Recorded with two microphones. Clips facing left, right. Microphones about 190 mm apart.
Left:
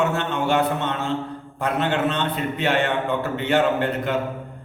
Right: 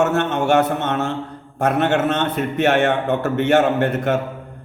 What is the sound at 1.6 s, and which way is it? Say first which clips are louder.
A man's voice: right 5 dB; 50° right (ahead or behind).